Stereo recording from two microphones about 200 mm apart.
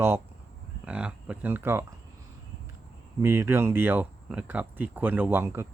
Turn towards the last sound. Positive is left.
turn(degrees=-10)  # may be behind; listen again after turning